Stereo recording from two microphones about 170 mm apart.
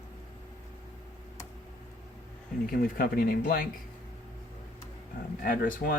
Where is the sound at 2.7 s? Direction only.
60° left (ahead or behind).